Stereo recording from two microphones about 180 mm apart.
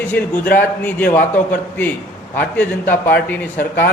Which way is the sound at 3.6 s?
55° left (ahead or behind).